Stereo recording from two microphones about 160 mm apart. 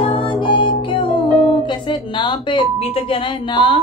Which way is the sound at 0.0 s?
35° left (ahead or behind).